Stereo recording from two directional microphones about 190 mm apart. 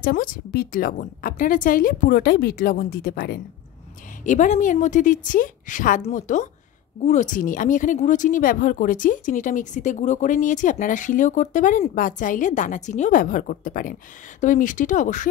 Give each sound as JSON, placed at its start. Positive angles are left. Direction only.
{"t": 0.0, "sound": "speech", "side_deg": 50}
{"t": 4.2, "sound": "a woman's voice", "side_deg": 40}